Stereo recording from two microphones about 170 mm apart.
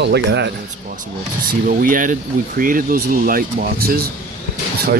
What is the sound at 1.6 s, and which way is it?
Speech, 50° right (ahead or behind).